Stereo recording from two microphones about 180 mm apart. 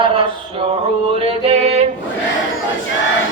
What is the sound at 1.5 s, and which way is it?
Music, 35° right (ahead or behind).